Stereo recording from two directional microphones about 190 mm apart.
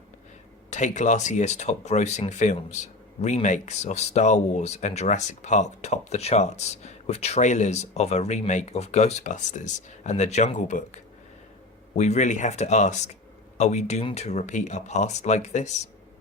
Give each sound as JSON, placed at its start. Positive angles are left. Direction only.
{"t": 0.7, "sound": "speech", "side_deg": 40}